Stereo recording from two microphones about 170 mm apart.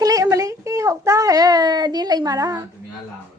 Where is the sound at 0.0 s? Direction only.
20° right (ahead or behind).